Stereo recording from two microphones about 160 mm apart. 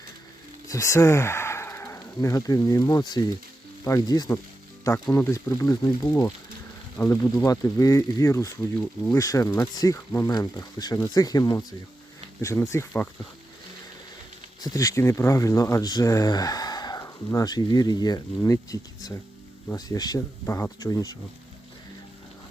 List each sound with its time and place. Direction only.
0.7 s speech: 20° left (ahead or behind)
14.6 s speech: 20° left (ahead or behind)